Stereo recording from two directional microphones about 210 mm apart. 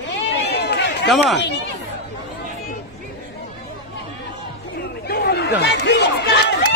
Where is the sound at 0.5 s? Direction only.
50° left (ahead or behind).